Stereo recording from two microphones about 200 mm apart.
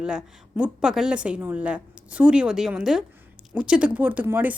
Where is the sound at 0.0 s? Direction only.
5° right (ahead or behind).